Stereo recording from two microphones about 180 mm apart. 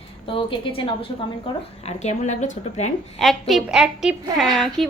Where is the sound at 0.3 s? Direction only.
30° left (ahead or behind).